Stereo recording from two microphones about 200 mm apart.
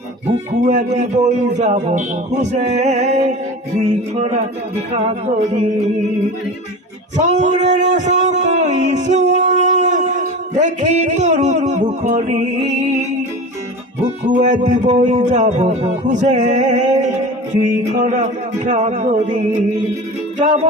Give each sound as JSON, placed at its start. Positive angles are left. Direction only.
{"t": 0.5, "sound": "a man's voice", "side_deg": -35}
{"t": 7.2, "sound": "music", "side_deg": -35}
{"t": 14.0, "sound": "a man's voice", "side_deg": -35}